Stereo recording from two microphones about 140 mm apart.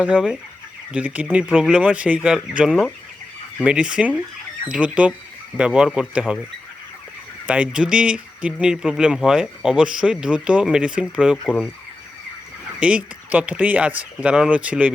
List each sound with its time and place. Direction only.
0.0 s speech: 5° right (ahead or behind)
7.4 s speech: 5° right (ahead or behind)
11.4 s speech: 10° left (ahead or behind)
12.8 s speech: 10° right (ahead or behind)